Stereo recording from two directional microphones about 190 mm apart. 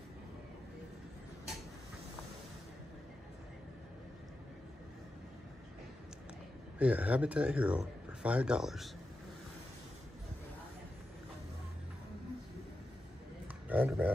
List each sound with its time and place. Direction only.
6.8 s speech: 5° right (ahead or behind)
13.7 s speech: 10° right (ahead or behind)